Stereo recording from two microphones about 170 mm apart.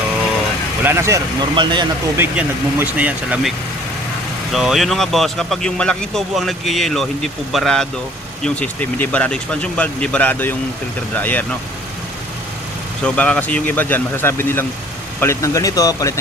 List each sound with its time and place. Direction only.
0.8 s speech: 15° right (ahead or behind)
1.5 s speech: 25° right (ahead or behind)
2.1 s speech: 15° right (ahead or behind)
4.5 s speech: centre (ahead or behind)
13.1 s speech: 5° left (ahead or behind)